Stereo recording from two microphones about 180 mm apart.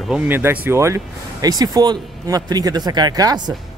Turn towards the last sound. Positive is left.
turn(degrees=-20)  # may be behind; listen again after turning